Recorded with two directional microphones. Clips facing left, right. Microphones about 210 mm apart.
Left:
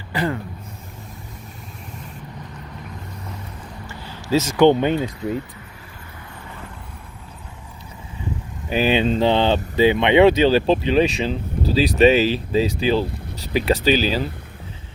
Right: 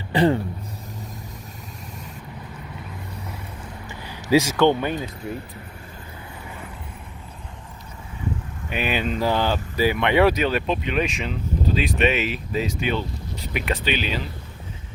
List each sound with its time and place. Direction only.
0.1 s speech: 30° right (ahead or behind)
3.8 s vehicle: 15° right (ahead or behind)
4.5 s speech: 20° left (ahead or behind)
8.7 s speech: 30° left (ahead or behind)